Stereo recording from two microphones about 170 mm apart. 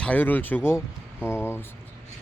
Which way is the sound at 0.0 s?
10° left (ahead or behind).